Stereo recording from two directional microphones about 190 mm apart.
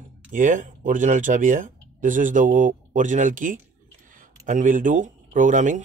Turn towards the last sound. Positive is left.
turn(degrees=-40)  # may be behind; listen again after turning